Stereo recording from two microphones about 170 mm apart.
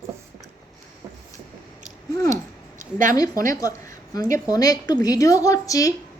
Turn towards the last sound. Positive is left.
turn(degrees=20)  # may be behind; listen again after turning